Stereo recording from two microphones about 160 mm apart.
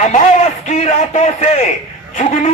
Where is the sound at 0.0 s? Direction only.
45° left (ahead or behind).